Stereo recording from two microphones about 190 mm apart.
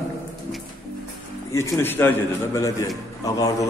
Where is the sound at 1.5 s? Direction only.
15° left (ahead or behind).